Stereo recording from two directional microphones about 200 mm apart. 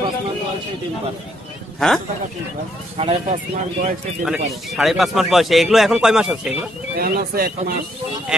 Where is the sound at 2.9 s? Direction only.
30° right (ahead or behind).